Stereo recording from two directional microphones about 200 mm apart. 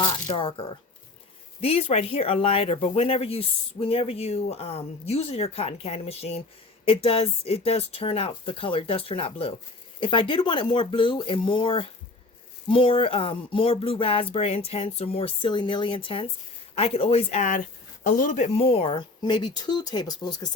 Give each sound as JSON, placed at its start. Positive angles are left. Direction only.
{"t": 0.0, "sound": "speech", "side_deg": 25}